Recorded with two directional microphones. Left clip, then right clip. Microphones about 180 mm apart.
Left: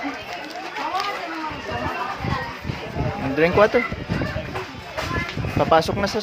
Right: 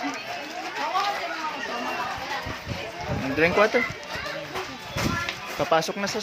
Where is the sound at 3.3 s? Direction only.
10° left (ahead or behind).